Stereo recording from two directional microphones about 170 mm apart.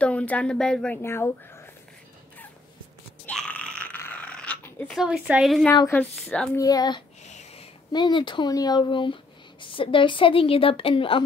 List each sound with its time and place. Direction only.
0.0 s speech: 5° left (ahead or behind)
3.3 s a sound: 5° left (ahead or behind)
4.9 s a woman's voice: 5° right (ahead or behind)
5.7 s speech: 15° left (ahead or behind)
6.6 s speech: 20° left (ahead or behind)
7.2 s a sound: 40° left (ahead or behind)
7.9 s speech: 25° left (ahead or behind)